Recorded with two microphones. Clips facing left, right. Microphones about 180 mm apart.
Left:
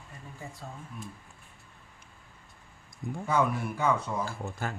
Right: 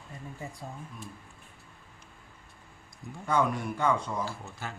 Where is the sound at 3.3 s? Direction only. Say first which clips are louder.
Even; 5° left (ahead or behind).